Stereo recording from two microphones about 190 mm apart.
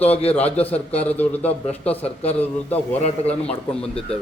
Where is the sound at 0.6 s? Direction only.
5° left (ahead or behind).